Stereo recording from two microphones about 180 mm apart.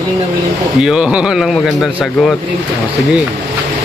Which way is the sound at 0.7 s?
5° right (ahead or behind).